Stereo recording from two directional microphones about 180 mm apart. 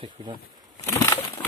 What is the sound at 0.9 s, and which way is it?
Crushing, 15° left (ahead or behind).